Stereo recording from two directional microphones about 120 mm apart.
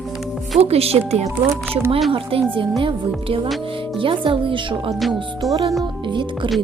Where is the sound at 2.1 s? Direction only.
50° right (ahead or behind).